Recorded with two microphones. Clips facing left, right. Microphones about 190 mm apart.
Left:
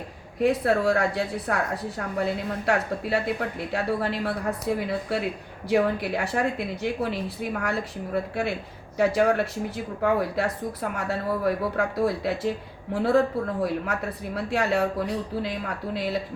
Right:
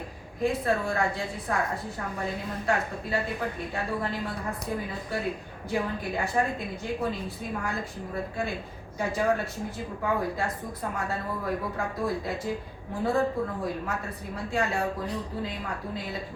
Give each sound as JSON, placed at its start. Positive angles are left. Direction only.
{"t": 0.3, "sound": "speech", "side_deg": 70}